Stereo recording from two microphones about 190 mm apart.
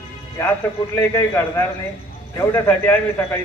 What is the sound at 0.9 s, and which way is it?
A man's voice, 15° left (ahead or behind).